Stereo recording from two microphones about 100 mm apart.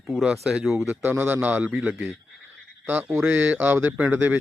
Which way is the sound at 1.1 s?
15° right (ahead or behind).